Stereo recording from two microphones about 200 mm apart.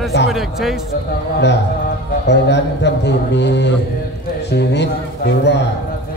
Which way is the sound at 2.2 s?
60° left (ahead or behind).